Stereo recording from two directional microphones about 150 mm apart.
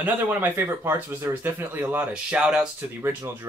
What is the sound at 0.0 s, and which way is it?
Speech, 10° right (ahead or behind).